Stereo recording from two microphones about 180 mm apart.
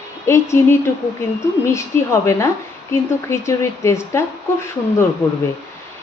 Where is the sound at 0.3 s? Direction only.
15° left (ahead or behind).